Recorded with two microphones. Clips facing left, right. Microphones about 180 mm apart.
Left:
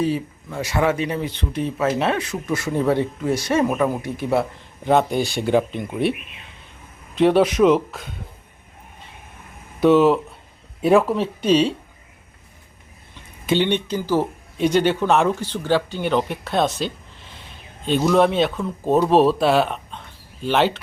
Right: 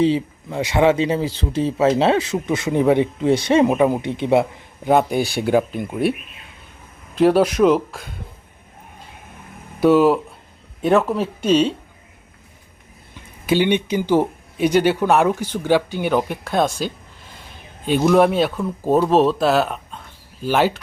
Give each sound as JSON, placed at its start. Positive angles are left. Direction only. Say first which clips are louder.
{"t": 0.0, "sound": "speech", "louder": "right 5 dB", "side_deg": -20}
{"t": 4.8, "sound": "speech", "louder": "right 1 dB", "side_deg": -5}
{"t": 7.2, "sound": "speech", "louder": "right 1 dB", "side_deg": -5}
{"t": 9.8, "sound": "speech", "louder": "right 1 dB", "side_deg": -5}
{"t": 13.4, "sound": "speech", "louder": "right 2 dB", "side_deg": -5}